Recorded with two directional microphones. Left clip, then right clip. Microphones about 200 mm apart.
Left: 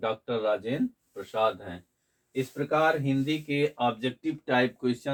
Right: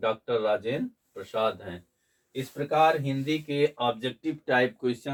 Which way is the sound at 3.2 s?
15° left (ahead or behind).